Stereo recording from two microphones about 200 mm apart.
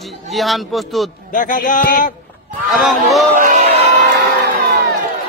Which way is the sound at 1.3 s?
40° left (ahead or behind).